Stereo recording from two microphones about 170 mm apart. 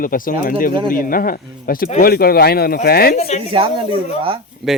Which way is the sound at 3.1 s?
40° left (ahead or behind).